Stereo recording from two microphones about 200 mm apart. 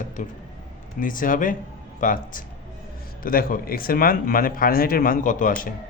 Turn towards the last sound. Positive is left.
turn(degrees=40)  # may be behind; listen again after turning